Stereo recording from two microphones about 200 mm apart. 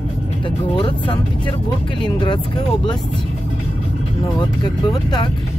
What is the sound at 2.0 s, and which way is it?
Speech, 25° left (ahead or behind).